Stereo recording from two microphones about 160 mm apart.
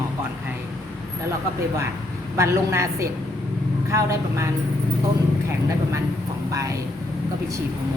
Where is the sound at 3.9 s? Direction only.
20° right (ahead or behind).